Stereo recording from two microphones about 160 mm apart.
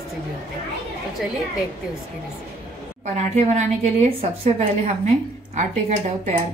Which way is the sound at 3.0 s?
45° right (ahead or behind).